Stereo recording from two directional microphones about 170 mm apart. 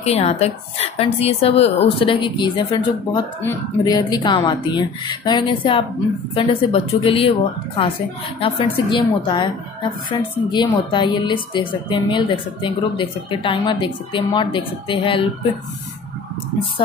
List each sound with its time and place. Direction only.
0.0 s a woman's voice: 35° left (ahead or behind)